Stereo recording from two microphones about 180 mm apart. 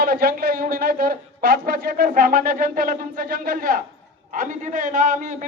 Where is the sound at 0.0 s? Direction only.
55° right (ahead or behind).